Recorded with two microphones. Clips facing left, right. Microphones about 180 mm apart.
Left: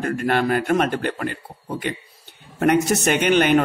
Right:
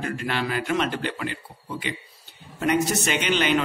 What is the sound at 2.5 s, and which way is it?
A man's voice, 55° left (ahead or behind).